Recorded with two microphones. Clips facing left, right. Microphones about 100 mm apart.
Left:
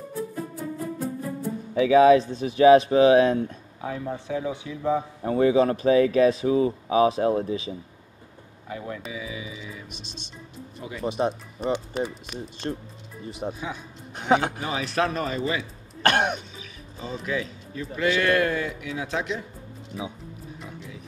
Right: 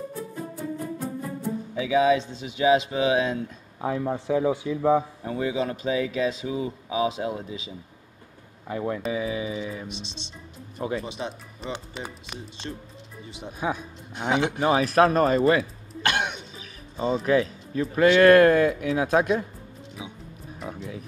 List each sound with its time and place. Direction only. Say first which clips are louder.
1.8 s speech: left 5 dB; 40° left (ahead or behind)
2.1 s speech: left 7 dB; 25° right (ahead or behind)
2.6 s speech: left 6 dB; 35° left (ahead or behind)
3.8 s speech: right 4 dB; 35° right (ahead or behind)
5.2 s speech: left 7 dB; 40° left (ahead or behind)
8.6 s speech: right 6 dB; 35° right (ahead or behind)
11.1 s speech: left 8 dB; 45° left (ahead or behind)
14.6 s speech: right 7 dB; 45° right (ahead or behind)
16.0 s throat clearing: left 4 dB; 45° left (ahead or behind)
16.5 s a man's voice: right 5 dB; 35° right (ahead or behind)
20.6 s speech: right 9 dB; 40° right (ahead or behind)